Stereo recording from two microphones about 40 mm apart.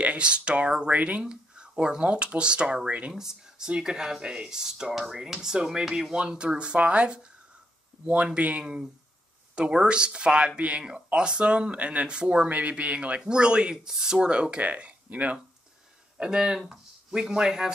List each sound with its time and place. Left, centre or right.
0.0 s speech: right
7.9 s a sound: centre
8.4 s speech: right
12.4 s speech: right
13.2 s speech: right
13.8 s speech: centre
14.2 s speech: right
14.6 s speech: right
16.2 s speech: centre